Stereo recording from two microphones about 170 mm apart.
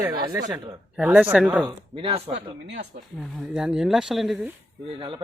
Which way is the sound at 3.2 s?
Centre (ahead or behind).